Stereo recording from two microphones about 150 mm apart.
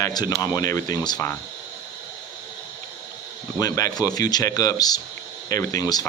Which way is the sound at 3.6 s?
25° left (ahead or behind).